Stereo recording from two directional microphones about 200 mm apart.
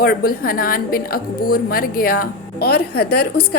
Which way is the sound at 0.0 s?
45° left (ahead or behind).